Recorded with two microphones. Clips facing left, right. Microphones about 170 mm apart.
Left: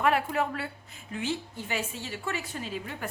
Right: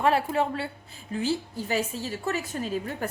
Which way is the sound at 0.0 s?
30° right (ahead or behind).